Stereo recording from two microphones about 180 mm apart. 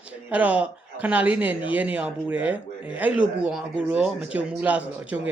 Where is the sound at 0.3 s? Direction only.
10° right (ahead or behind).